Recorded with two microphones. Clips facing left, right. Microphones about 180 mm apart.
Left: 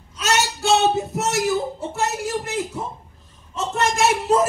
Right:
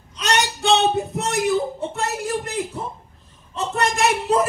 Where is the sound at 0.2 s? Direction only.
5° left (ahead or behind).